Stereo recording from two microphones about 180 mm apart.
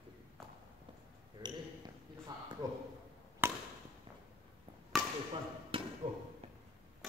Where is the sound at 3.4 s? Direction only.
10° right (ahead or behind).